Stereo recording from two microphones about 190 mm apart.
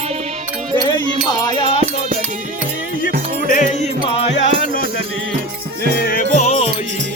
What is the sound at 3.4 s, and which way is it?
Music, 40° left (ahead or behind).